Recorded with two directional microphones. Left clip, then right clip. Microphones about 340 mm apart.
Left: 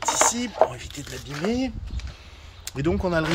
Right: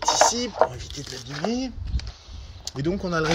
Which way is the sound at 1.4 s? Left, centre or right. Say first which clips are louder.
Left 2 dB; centre.